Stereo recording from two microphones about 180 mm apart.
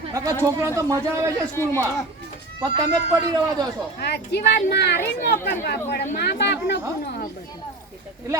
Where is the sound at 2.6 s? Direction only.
20° right (ahead or behind).